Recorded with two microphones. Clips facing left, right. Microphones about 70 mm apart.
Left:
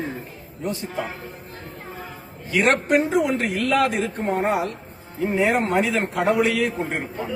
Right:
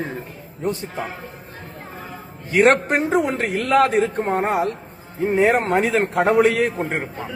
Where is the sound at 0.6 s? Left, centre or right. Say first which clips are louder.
Right 3 dB; right.